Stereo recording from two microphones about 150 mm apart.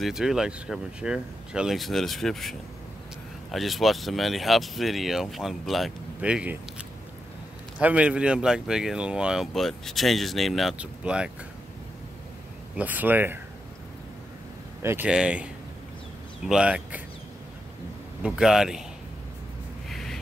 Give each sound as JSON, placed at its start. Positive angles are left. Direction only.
{"t": 0.0, "sound": "speech", "side_deg": -5}
{"t": 3.5, "sound": "speech", "side_deg": 0}
{"t": 7.8, "sound": "speech", "side_deg": -10}
{"t": 12.7, "sound": "speech", "side_deg": -10}
{"t": 14.8, "sound": "speech", "side_deg": -15}
{"t": 15.0, "sound": "speech", "side_deg": -5}
{"t": 18.2, "sound": "speech", "side_deg": -5}
{"t": 19.9, "sound": "a sound", "side_deg": 0}